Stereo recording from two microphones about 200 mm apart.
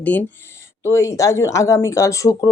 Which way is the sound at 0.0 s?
10° left (ahead or behind).